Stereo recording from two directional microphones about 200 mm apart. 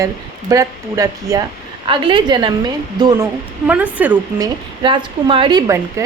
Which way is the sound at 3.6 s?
5° right (ahead or behind).